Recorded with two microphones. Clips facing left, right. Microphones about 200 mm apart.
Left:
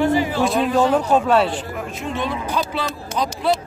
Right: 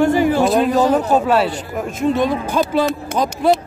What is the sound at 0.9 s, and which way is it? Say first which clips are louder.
Speech: right 1 dB; 5° right (ahead or behind).